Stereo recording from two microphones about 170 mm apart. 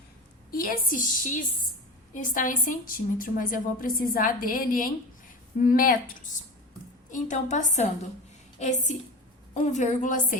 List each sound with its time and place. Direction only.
0.5 s a woman's voice: 55° left (ahead or behind)